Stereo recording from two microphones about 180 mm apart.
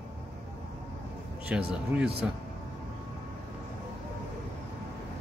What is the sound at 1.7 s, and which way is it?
Speech, 5° right (ahead or behind).